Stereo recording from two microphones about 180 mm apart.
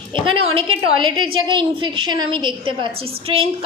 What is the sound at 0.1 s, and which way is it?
A woman's voice, 30° right (ahead or behind).